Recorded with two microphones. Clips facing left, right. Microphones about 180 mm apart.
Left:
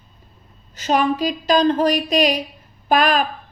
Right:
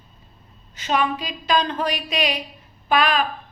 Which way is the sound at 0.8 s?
40° left (ahead or behind).